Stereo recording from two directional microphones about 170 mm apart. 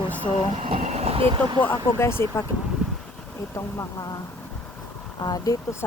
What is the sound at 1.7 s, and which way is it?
Speech, 15° left (ahead or behind).